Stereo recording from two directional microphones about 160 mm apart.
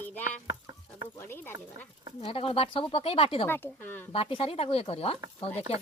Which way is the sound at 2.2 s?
35° left (ahead or behind).